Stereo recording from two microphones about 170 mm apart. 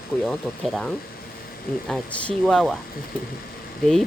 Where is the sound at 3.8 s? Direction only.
5° left (ahead or behind).